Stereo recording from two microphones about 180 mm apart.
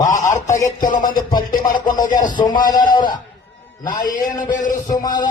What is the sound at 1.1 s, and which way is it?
Music, 25° left (ahead or behind).